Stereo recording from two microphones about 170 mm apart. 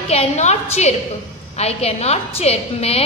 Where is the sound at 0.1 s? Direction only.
40° left (ahead or behind).